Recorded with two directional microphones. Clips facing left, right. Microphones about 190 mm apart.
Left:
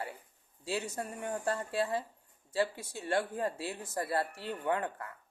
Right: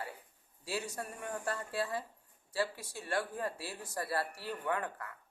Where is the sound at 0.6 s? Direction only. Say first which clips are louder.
Left 3 dB; 25° left (ahead or behind).